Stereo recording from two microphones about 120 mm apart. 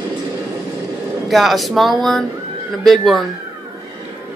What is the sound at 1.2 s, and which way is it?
Speech, centre (ahead or behind).